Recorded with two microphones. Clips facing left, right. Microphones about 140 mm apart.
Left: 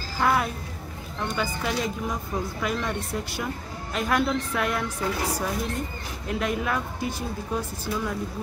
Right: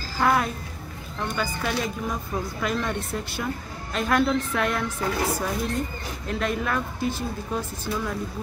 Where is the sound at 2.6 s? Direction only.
10° left (ahead or behind).